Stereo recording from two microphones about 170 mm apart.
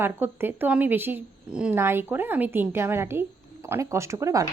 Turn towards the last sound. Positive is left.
turn(degrees=-20)  # may be behind; listen again after turning